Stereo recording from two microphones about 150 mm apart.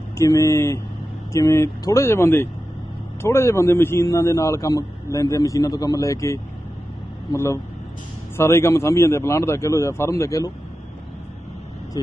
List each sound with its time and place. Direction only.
0.2 s a man's voice: 20° left (ahead or behind)